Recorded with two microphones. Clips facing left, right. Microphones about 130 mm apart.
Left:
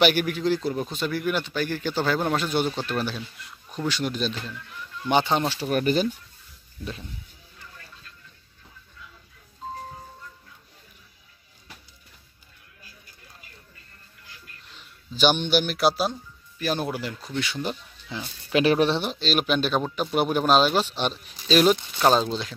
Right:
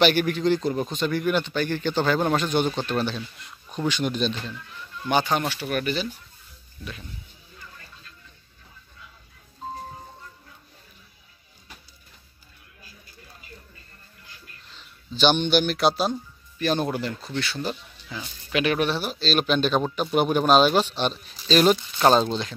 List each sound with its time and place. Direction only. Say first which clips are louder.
0.0 s a man's voice: right 1 dB; 10° left (ahead or behind)
5.0 s speech: left 1 dB; 25° left (ahead or behind)
15.1 s speech: right 1 dB; 5° left (ahead or behind)
18.5 s speech: left 3 dB; 30° left (ahead or behind); by 19.8 s 10° left (ahead or behind)
19.8 s a man's voice: right 2 dB; centre (ahead or behind)